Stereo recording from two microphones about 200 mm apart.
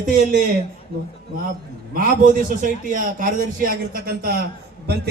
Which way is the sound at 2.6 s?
40° right (ahead or behind).